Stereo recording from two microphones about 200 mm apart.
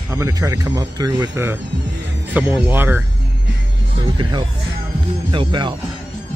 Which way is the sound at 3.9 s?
25° right (ahead or behind).